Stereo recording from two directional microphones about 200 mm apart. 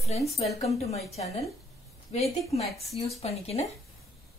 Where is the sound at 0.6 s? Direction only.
30° left (ahead or behind).